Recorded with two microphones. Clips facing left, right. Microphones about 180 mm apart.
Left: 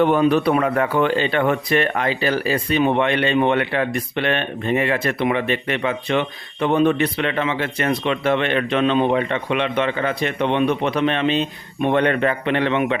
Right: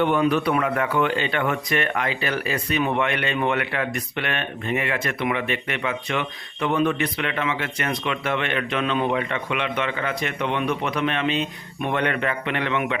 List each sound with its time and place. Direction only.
0.0 s speech: 35° left (ahead or behind)